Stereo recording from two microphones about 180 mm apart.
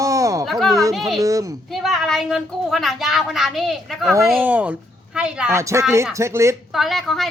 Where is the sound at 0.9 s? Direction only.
Centre (ahead or behind).